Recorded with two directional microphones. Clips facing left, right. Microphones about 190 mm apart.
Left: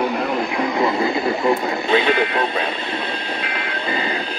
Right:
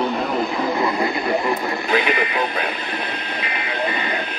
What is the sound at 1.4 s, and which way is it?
Speech, 25° left (ahead or behind).